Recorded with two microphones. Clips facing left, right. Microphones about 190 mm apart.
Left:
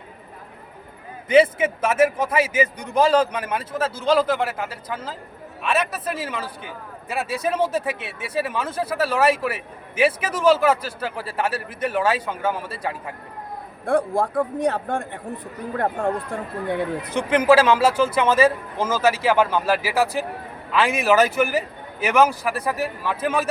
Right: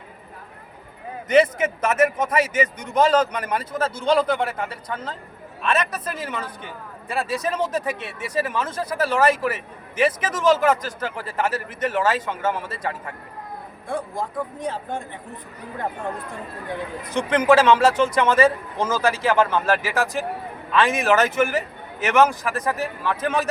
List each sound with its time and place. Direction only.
1.3 s a man's voice: 5° left (ahead or behind)
13.8 s speech: 65° left (ahead or behind)
17.2 s speech: 5° left (ahead or behind)